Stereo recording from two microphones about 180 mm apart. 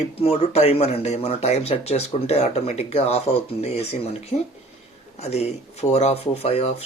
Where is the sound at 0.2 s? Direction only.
35° left (ahead or behind).